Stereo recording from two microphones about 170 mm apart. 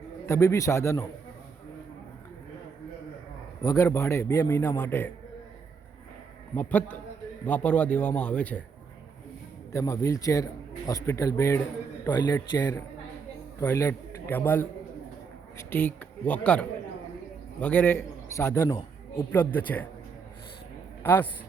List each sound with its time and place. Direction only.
0.3 s a man's voice: 15° left (ahead or behind)
3.6 s a man's voice: 15° left (ahead or behind)
6.6 s a man's voice: 10° left (ahead or behind)
9.7 s a man's voice: 15° left (ahead or behind)
21.0 s speech: 10° left (ahead or behind)